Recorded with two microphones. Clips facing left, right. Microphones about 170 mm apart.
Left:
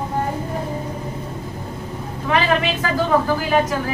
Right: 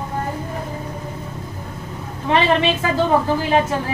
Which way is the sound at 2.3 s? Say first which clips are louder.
Right 2 dB; 25° right (ahead or behind).